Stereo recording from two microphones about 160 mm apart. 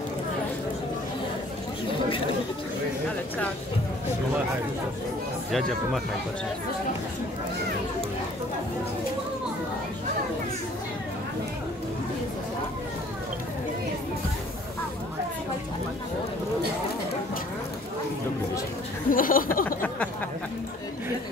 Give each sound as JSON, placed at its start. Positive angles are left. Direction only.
{"t": 19.0, "sound": "speech", "side_deg": 60}